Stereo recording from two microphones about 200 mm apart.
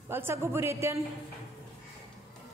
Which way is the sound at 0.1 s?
10° right (ahead or behind).